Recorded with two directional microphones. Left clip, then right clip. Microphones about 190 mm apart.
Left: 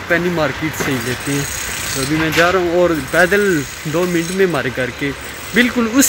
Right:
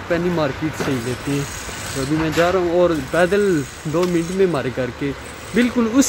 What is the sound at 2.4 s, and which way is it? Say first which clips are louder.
Speech: left 2 dB; centre (ahead or behind).